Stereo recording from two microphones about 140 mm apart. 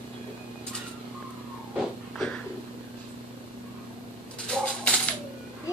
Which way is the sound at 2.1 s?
5° left (ahead or behind).